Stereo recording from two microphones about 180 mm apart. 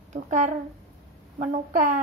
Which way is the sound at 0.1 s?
45° right (ahead or behind).